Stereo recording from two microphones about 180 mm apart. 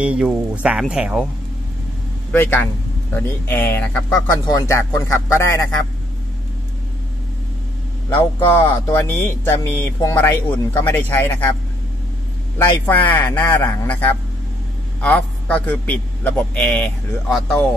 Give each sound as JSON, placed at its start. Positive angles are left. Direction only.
{"t": 0.0, "sound": "speech", "side_deg": -5}
{"t": 2.3, "sound": "speech", "side_deg": 10}
{"t": 8.2, "sound": "speech", "side_deg": 15}
{"t": 12.8, "sound": "speech", "side_deg": 10}